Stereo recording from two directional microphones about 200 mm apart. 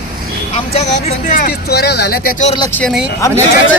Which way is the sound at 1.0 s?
40° left (ahead or behind).